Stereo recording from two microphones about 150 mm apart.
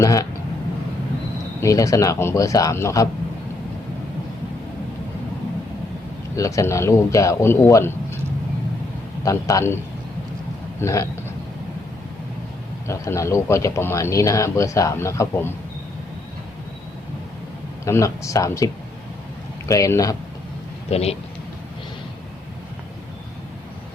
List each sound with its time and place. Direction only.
0.0 s speech: 20° left (ahead or behind)
1.6 s speech: 20° left (ahead or behind)
6.3 s speech: 20° left (ahead or behind)
9.2 s speech: 20° left (ahead or behind)
10.8 s speech: 20° left (ahead or behind)
12.9 s speech: 20° left (ahead or behind)
17.8 s speech: 20° left (ahead or behind)
20.9 s speech: 45° left (ahead or behind)